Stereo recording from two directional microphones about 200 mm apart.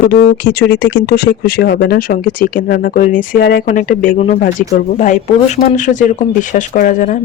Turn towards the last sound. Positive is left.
turn(degrees=40)  # may be behind; listen again after turning